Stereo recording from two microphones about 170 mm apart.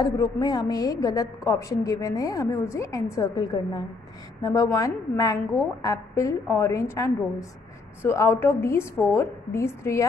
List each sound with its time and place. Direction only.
0.0 s a woman's voice: 20° left (ahead or behind)